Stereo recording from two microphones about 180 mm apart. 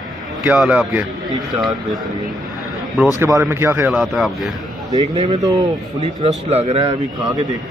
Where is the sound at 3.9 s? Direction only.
Centre (ahead or behind).